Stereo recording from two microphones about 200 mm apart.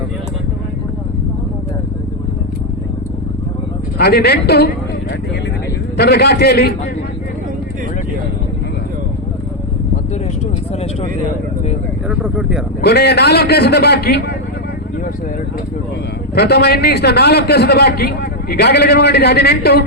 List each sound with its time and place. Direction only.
3.9 s a man's voice: 50° left (ahead or behind)
6.0 s a man's voice: 55° left (ahead or behind)
12.0 s speech: 5° right (ahead or behind)
12.8 s a man's voice: 55° left (ahead or behind)
16.3 s a man's voice: 55° left (ahead or behind)